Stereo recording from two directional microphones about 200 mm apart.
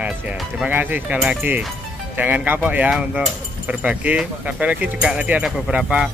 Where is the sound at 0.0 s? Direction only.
5° right (ahead or behind).